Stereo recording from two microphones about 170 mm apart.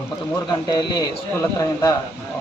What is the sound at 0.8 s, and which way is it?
Speech, 25° left (ahead or behind).